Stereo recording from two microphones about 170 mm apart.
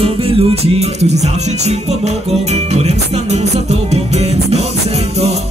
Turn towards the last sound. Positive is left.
turn(degrees=-40)  # may be behind; listen again after turning